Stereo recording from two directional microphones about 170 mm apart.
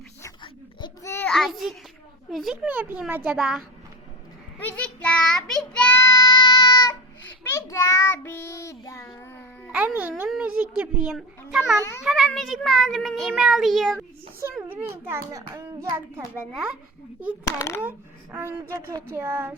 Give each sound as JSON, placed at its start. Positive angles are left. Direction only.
{"t": 1.0, "sound": "child singing", "side_deg": 15}
{"t": 1.3, "sound": "a child's voice", "side_deg": 0}
{"t": 4.6, "sound": "child singing", "side_deg": 5}
{"t": 6.0, "sound": "child singing", "side_deg": 20}
{"t": 9.7, "sound": "a child's voice", "side_deg": -10}
{"t": 14.6, "sound": "a child's voice", "side_deg": -15}
{"t": 16.5, "sound": "a child's voice", "side_deg": 0}
{"t": 17.4, "sound": "a child's voice", "side_deg": 20}
{"t": 17.8, "sound": "a child's voice", "side_deg": -15}